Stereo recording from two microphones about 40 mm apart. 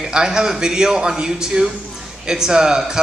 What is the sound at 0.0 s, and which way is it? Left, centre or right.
A man's voice, centre.